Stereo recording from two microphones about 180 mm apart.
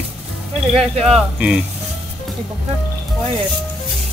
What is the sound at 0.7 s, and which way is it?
Speech, 35° right (ahead or behind).